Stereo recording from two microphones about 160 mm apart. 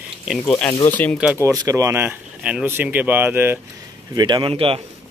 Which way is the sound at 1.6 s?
20° right (ahead or behind).